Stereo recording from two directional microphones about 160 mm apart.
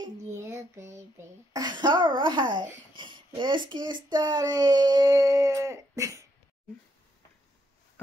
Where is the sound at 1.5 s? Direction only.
25° right (ahead or behind).